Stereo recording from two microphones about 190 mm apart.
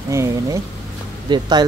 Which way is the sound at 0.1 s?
15° right (ahead or behind).